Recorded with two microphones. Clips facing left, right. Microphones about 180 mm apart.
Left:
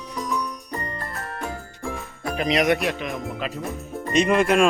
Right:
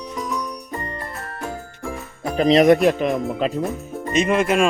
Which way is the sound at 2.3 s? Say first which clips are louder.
Right 8 dB; 35° right (ahead or behind).